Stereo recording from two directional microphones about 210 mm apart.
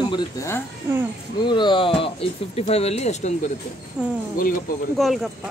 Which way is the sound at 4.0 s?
5° right (ahead or behind).